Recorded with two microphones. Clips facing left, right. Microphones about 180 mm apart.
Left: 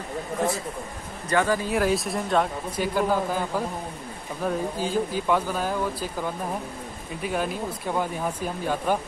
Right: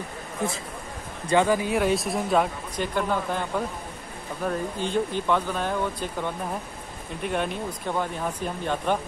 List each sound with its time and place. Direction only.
1.3 s speech: 15° right (ahead or behind)
1.7 s speech: centre (ahead or behind)